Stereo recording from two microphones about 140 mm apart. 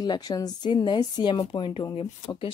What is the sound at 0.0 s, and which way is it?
Speech, 30° left (ahead or behind).